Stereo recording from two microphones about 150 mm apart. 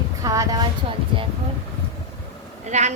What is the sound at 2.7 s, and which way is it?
Speech, 50° right (ahead or behind).